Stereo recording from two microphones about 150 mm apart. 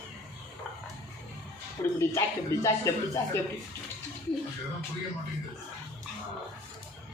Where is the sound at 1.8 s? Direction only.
20° left (ahead or behind).